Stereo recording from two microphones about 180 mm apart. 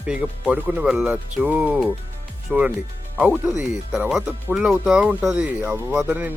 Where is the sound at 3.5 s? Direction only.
40° left (ahead or behind).